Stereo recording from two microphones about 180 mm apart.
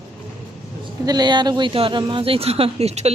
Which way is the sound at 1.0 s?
20° right (ahead or behind).